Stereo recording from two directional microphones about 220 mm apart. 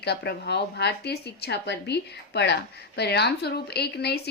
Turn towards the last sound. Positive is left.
turn(degrees=45)  # may be behind; listen again after turning